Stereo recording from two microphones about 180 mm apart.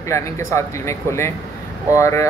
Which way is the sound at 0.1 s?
15° left (ahead or behind).